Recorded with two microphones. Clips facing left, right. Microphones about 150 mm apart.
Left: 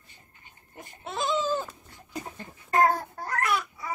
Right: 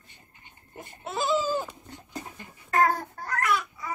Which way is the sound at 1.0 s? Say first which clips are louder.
Right 2 dB; 5° right (ahead or behind).